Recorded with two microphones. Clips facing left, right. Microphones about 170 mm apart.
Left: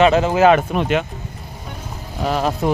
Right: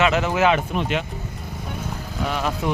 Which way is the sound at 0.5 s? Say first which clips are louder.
Left 6 dB; 55° left (ahead or behind).